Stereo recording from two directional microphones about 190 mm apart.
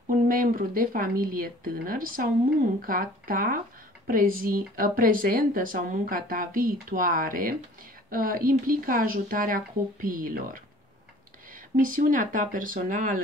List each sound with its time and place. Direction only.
0.1 s speech: 45° right (ahead or behind)
11.7 s speech: 45° right (ahead or behind)